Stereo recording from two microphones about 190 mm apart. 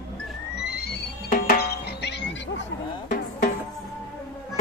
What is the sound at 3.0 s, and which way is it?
Music, 45° left (ahead or behind).